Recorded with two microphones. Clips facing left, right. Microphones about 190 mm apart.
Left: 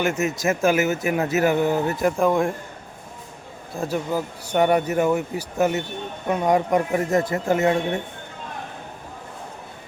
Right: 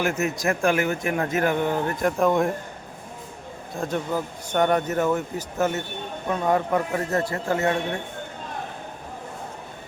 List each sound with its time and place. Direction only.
0.0 s speech: centre (ahead or behind)
3.8 s speech: 5° left (ahead or behind)